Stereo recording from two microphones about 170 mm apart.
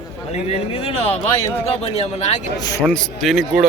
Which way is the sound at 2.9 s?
Centre (ahead or behind).